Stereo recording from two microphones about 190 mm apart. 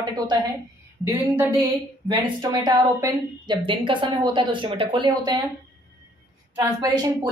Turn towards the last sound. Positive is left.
turn(degrees=-20)  # may be behind; listen again after turning